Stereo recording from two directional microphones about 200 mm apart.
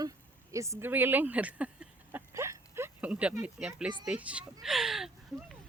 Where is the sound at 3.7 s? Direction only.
5° right (ahead or behind).